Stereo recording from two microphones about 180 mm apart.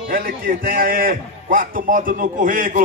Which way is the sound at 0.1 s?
50° right (ahead or behind).